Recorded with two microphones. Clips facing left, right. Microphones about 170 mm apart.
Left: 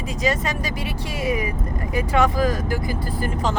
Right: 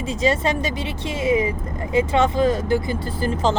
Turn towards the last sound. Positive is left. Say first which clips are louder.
# right 3 dB
turn(degrees=-30)  # may be behind; listen again after turning